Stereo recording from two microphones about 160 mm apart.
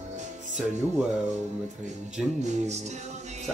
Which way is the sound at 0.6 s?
5° right (ahead or behind).